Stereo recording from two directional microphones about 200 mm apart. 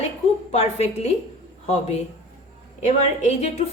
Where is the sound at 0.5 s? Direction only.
30° left (ahead or behind).